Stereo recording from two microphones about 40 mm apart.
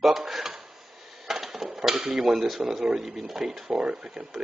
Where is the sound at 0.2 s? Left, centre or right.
Centre.